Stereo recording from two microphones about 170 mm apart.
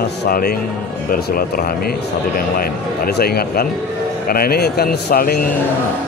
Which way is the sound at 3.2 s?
65° left (ahead or behind).